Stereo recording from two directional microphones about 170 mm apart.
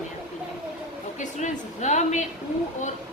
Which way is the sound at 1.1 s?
45° left (ahead or behind).